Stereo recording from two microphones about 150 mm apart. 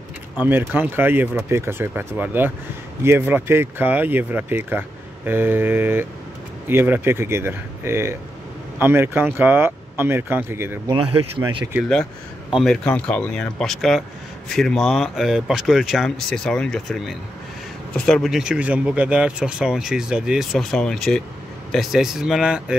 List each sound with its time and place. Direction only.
0.5 s speech: 15° right (ahead or behind)
10.9 s speech: 35° right (ahead or behind)
12.5 s speech: 5° left (ahead or behind)